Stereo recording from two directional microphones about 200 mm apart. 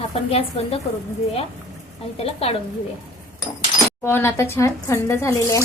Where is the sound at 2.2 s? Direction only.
30° left (ahead or behind).